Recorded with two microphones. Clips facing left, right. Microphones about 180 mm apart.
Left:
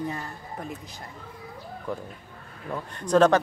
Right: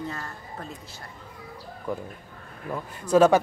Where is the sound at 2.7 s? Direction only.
5° right (ahead or behind).